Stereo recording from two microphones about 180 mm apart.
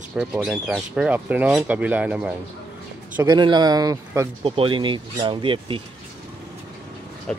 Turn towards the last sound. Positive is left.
turn(degrees=5)  # may be behind; listen again after turning